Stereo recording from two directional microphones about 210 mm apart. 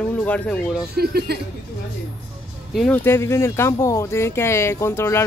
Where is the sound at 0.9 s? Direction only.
50° right (ahead or behind).